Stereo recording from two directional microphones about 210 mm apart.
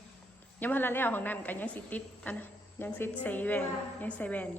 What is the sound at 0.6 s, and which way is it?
A woman's voice, 10° left (ahead or behind).